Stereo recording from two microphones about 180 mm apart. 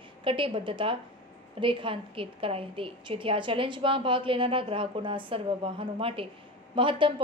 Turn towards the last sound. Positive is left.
turn(degrees=-30)  # may be behind; listen again after turning